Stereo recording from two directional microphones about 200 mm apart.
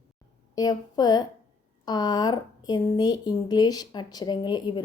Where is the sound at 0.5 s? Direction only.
20° left (ahead or behind).